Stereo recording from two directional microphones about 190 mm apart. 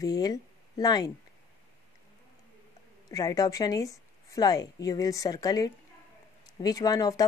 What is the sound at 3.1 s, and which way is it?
Speech, 20° left (ahead or behind).